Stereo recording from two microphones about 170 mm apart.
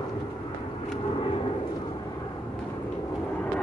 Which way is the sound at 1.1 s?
30° left (ahead or behind).